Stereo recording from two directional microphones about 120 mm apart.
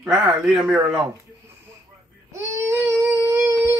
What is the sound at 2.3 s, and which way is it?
Baby cry, 25° right (ahead or behind).